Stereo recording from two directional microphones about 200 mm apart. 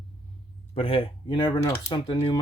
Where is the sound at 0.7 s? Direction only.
25° left (ahead or behind).